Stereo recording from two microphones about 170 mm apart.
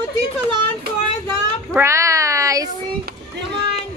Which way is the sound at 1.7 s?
15° right (ahead or behind).